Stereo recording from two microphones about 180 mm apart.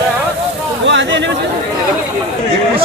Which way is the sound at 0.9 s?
90° right.